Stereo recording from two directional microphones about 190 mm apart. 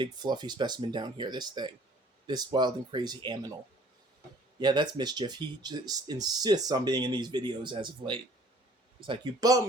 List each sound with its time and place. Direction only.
0.0 s speech: 20° right (ahead or behind)
4.6 s speech: 25° right (ahead or behind)